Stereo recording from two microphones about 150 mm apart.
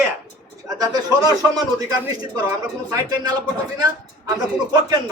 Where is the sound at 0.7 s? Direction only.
25° right (ahead or behind).